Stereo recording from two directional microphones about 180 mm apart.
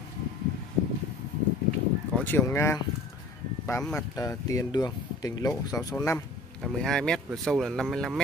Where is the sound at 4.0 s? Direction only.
15° left (ahead or behind).